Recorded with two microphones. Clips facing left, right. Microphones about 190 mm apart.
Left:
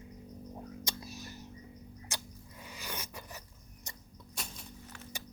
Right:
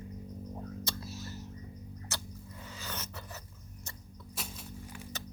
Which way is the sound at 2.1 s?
15° left (ahead or behind).